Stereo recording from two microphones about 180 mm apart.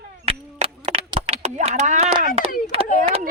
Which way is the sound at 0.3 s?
30° right (ahead or behind).